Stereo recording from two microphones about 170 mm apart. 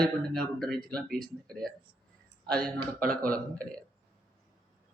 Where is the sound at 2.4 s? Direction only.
5° left (ahead or behind).